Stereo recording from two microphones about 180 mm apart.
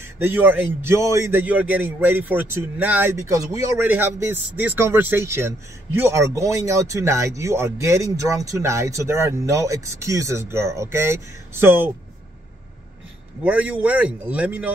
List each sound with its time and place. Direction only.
0.0 s speech: 15° right (ahead or behind)
13.4 s speech: 5° right (ahead or behind)